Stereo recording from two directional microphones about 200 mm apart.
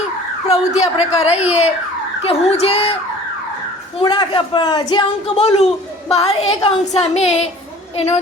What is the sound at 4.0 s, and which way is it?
Speech, 25° left (ahead or behind).